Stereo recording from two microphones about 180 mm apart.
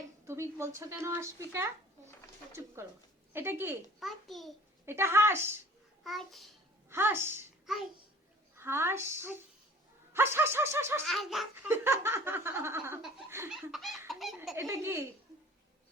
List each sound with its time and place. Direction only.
0.3 s speech: 15° right (ahead or behind)
4.0 s a child's voice: centre (ahead or behind)
4.9 s speech: 15° right (ahead or behind)
6.0 s a child's voice: centre (ahead or behind)
6.9 s speech: 15° right (ahead or behind)
7.7 s a child's voice: centre (ahead or behind)
8.5 s speech: 15° right (ahead or behind)
11.0 s a child's voice: centre (ahead or behind)
11.7 s speech: 15° right (ahead or behind)
13.5 s a child's voice: centre (ahead or behind)
14.1 s belly laugh: centre (ahead or behind)
14.5 s speech: 15° right (ahead or behind)